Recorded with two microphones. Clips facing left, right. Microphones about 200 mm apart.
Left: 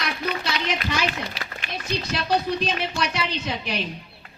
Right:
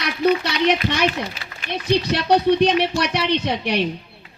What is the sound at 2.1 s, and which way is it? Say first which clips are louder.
A woman's voice: right 7 dB; 65° right (ahead or behind).